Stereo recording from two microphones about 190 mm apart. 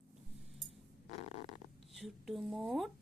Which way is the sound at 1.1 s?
35° left (ahead or behind).